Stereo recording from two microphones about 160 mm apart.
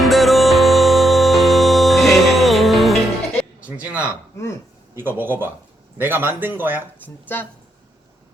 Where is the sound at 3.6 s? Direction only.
10° right (ahead or behind).